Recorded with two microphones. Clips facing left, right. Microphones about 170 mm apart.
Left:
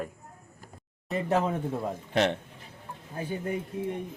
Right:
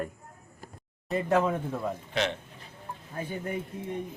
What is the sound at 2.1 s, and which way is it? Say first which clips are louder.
Speech: left 5 dB; 55° left (ahead or behind).